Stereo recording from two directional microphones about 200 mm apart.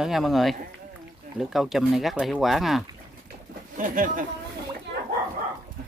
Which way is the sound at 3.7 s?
45° right (ahead or behind).